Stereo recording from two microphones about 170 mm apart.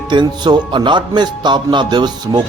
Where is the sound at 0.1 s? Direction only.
25° right (ahead or behind).